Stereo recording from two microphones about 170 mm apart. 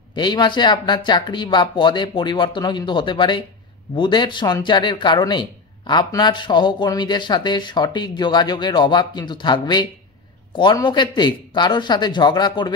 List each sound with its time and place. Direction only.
0.1 s a man's voice: 25° left (ahead or behind)